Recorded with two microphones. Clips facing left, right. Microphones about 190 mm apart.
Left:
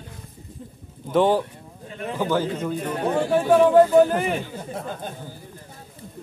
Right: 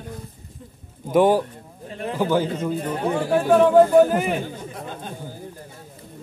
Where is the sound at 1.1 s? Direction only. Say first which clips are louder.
Right 2 dB; 10° right (ahead or behind).